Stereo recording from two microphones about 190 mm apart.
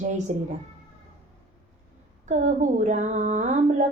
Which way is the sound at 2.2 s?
40° right (ahead or behind).